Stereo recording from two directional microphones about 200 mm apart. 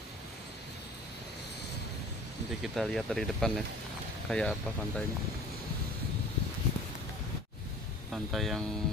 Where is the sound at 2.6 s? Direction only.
Centre (ahead or behind).